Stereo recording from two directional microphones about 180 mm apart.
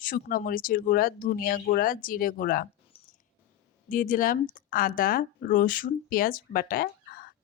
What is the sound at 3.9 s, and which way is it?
Speech, 50° left (ahead or behind).